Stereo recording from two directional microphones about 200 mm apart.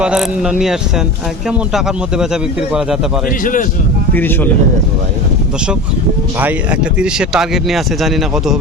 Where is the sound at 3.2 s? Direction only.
40° left (ahead or behind).